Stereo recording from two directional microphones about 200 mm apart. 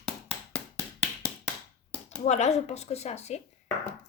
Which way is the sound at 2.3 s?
35° left (ahead or behind).